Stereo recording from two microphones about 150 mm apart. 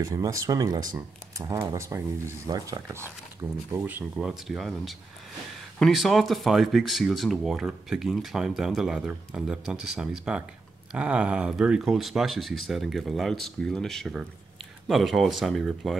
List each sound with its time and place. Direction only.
0.0 s speech: 20° right (ahead or behind); by 16.0 s centre (ahead or behind)